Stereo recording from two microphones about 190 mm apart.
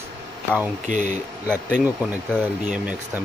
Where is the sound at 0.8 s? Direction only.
40° right (ahead or behind).